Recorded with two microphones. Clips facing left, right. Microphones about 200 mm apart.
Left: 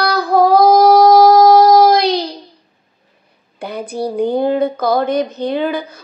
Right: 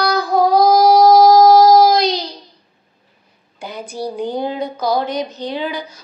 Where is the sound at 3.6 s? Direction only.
60° left (ahead or behind).